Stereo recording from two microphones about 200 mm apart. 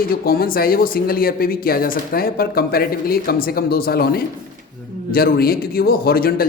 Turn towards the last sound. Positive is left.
turn(degrees=50)  # may be behind; listen again after turning